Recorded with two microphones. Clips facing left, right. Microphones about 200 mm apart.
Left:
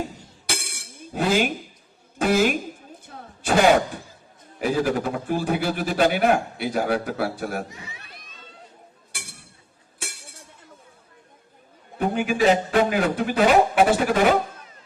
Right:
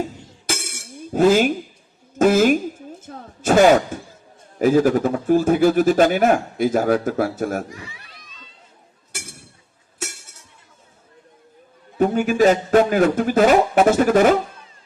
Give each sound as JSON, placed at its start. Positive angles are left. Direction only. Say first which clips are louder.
{"t": 0.4, "sound": "dishes", "louder": "right 5 dB", "side_deg": -45}
{"t": 2.1, "sound": "a woman's voice", "louder": "right 6 dB", "side_deg": -45}
{"t": 7.7, "sound": "speech", "louder": "right 4 dB", "side_deg": 20}
{"t": 10.0, "sound": "a sound", "louder": "right 6 dB", "side_deg": -45}
{"t": 11.9, "sound": "speech", "louder": "right 5 dB", "side_deg": -45}